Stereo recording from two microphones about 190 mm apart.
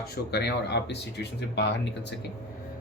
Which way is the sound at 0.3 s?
60° left (ahead or behind).